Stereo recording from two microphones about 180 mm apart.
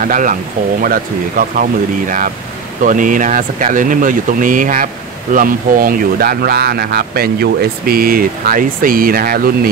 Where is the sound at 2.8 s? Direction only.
45° right (ahead or behind).